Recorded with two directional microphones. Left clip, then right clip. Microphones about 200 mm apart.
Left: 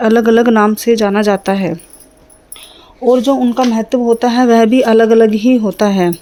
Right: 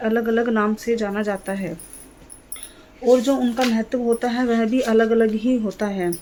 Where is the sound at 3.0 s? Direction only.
35° left (ahead or behind).